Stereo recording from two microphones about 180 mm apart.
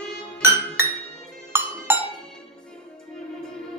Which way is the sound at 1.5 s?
15° right (ahead or behind).